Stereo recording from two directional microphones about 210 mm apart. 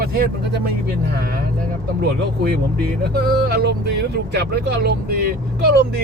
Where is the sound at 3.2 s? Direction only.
50° right (ahead or behind).